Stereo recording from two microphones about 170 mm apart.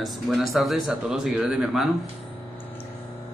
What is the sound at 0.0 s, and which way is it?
Mantra, centre (ahead or behind).